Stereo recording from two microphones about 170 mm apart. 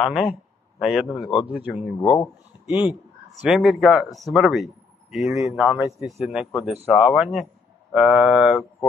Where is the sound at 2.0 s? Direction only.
25° left (ahead or behind).